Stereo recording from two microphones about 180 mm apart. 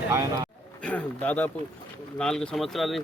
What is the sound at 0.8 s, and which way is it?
Speech, 10° left (ahead or behind).